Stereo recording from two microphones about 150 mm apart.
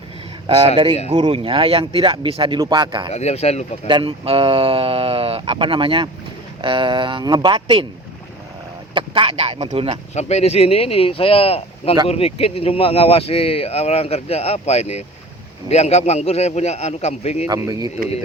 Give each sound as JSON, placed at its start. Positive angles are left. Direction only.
{"t": 1.1, "sound": "speech", "side_deg": -35}
{"t": 3.1, "sound": "a man's voice", "side_deg": 45}
{"t": 3.8, "sound": "speech", "side_deg": -35}
{"t": 9.0, "sound": "speech", "side_deg": -40}
{"t": 10.2, "sound": "a man's voice", "side_deg": 45}
{"t": 17.5, "sound": "speech", "side_deg": -25}